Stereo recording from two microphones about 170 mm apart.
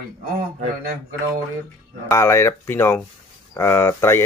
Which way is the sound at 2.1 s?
15° left (ahead or behind).